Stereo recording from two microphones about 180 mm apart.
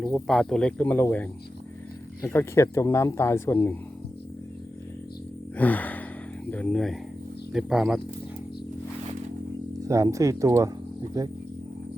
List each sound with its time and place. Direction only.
0.0 s speech: centre (ahead or behind)
5.5 s gasp: 10° left (ahead or behind)
6.5 s speech: 5° left (ahead or behind)
9.8 s speech: 15° right (ahead or behind)